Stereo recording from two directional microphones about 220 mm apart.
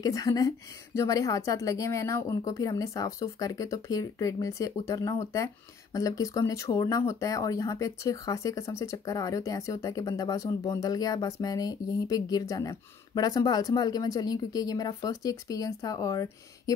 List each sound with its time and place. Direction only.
0.0 s speech: 15° left (ahead or behind)